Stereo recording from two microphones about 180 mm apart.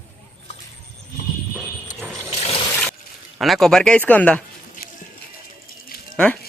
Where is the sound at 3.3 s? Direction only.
Centre (ahead or behind).